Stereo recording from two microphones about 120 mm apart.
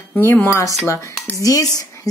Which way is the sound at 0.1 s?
15° left (ahead or behind).